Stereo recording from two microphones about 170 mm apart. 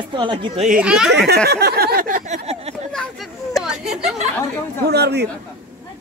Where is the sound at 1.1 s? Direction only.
75° right (ahead or behind).